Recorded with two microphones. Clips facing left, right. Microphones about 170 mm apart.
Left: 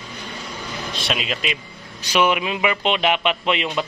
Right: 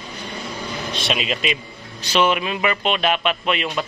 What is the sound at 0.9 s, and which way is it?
Speech, centre (ahead or behind).